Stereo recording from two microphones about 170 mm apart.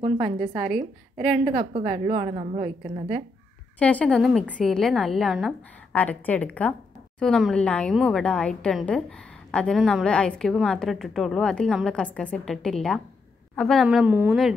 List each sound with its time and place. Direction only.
1.2 s a woman's voice: 40° right (ahead or behind)
3.8 s a woman's voice: 5° left (ahead or behind)
13.8 s a woman's voice: 10° right (ahead or behind)